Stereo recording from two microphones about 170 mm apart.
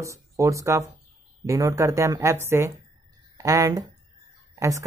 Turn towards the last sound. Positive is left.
turn(degrees=-20)  # may be behind; listen again after turning